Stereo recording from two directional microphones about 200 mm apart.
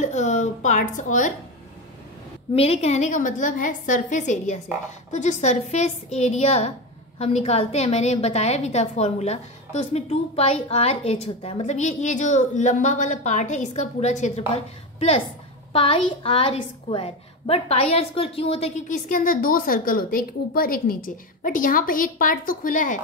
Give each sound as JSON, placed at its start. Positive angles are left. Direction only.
{"t": 0.0, "sound": "speech", "side_deg": 35}
{"t": 2.5, "sound": "a woman's voice", "side_deg": 30}